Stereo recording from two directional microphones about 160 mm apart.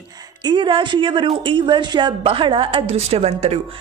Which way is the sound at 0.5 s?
30° right (ahead or behind).